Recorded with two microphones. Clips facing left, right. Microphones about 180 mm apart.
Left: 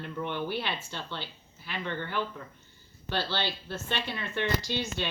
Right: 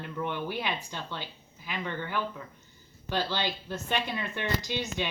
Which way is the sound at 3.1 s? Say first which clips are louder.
Right 1 dB; 15° right (ahead or behind).